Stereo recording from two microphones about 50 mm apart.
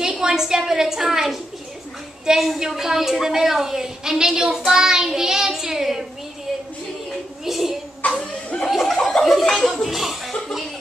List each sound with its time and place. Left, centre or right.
0.0 s a woman's voice: centre
7.1 s a sound: centre
8.0 s chuckle: left
8.6 s chuckle: centre
9.2 s speech: centre